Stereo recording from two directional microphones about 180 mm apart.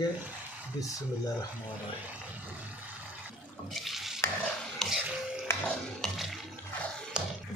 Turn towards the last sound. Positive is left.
turn(degrees=-5)  # may be behind; listen again after turning